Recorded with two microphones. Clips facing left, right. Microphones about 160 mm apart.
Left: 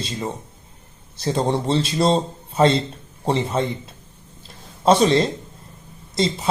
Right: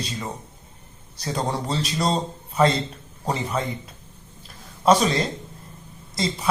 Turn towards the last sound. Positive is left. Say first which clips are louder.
# left 5 dB
turn(degrees=25)  # may be behind; listen again after turning